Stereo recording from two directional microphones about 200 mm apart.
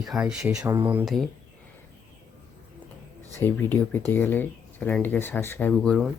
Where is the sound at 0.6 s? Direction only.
20° right (ahead or behind).